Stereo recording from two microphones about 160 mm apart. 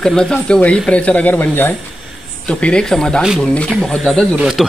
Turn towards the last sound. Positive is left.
turn(degrees=-5)  # may be behind; listen again after turning